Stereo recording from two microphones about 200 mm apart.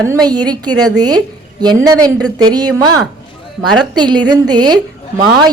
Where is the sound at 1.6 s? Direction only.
20° right (ahead or behind).